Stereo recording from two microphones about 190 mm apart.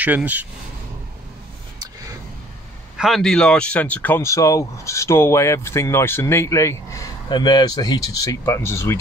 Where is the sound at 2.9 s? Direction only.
Centre (ahead or behind).